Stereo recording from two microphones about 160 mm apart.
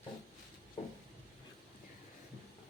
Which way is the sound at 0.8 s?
45° left (ahead or behind).